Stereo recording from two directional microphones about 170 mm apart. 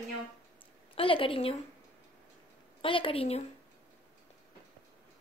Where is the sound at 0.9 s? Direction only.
30° left (ahead or behind).